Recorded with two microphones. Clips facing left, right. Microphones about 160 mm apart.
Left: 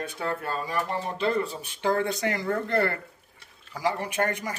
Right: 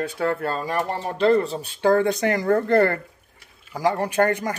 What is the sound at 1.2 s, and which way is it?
Speech, 35° right (ahead or behind).